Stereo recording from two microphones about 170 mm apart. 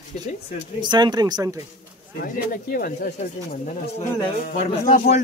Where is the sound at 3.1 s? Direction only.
50° left (ahead or behind).